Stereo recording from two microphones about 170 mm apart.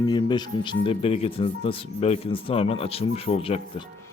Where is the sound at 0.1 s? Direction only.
25° left (ahead or behind).